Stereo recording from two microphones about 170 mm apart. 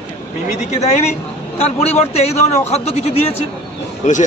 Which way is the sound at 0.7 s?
40° left (ahead or behind).